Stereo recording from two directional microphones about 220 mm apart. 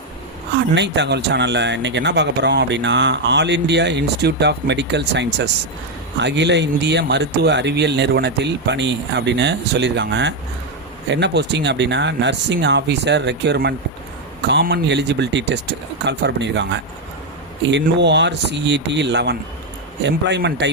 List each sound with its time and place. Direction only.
0.7 s speech: 55° right (ahead or behind)